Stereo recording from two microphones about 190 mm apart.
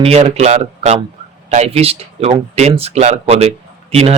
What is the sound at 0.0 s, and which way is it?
Speech, 35° right (ahead or behind).